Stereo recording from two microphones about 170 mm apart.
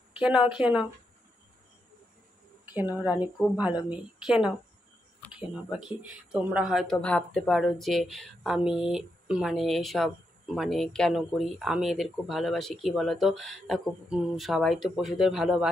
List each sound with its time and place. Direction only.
0.2 s speech: 5° right (ahead or behind)
2.9 s speech: 20° left (ahead or behind)
3.2 s speech: 5° right (ahead or behind)
5.2 s a sound: 10° left (ahead or behind)
5.7 s speech: 5° right (ahead or behind)